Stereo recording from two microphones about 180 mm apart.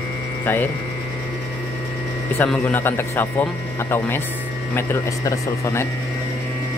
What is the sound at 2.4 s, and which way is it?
Speech, 10° left (ahead or behind).